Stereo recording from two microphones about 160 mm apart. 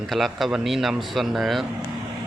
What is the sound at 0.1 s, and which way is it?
Speech, centre (ahead or behind).